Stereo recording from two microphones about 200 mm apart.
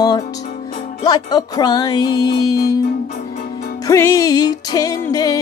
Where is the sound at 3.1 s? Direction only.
50° left (ahead or behind).